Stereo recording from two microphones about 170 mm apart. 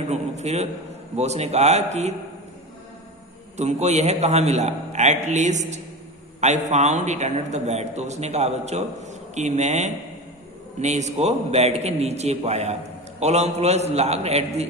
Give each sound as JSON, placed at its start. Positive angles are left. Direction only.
{"t": 0.1, "sound": "a sound", "side_deg": -40}
{"t": 1.1, "sound": "a man's voice", "side_deg": -40}
{"t": 3.5, "sound": "a man's voice", "side_deg": -40}